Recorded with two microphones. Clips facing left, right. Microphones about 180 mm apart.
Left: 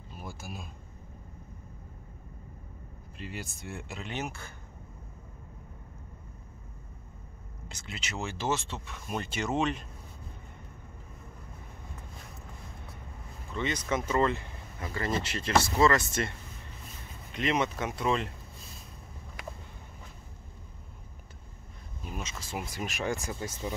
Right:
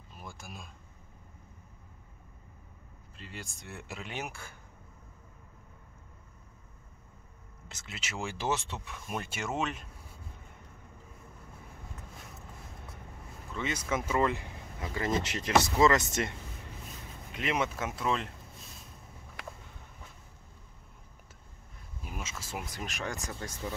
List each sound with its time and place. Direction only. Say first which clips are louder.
0.2 s speech: left 4 dB; 5° left (ahead or behind)
3.2 s speech: left 5 dB; 10° left (ahead or behind); by 4.6 s 10° right (ahead or behind)
7.6 s speech: left 3 dB; 5° right (ahead or behind)
13.5 s speech: left 2 dB; 5° right (ahead or behind)
17.3 s speech: left 3 dB; 5° right (ahead or behind)
22.0 s speech: left 2 dB; 5° right (ahead or behind); by 23.6 s 10° left (ahead or behind)